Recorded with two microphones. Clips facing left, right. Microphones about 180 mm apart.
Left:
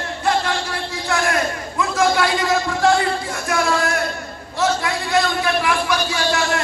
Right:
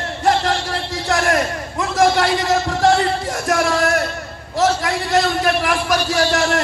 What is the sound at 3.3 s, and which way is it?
Music, 40° right (ahead or behind).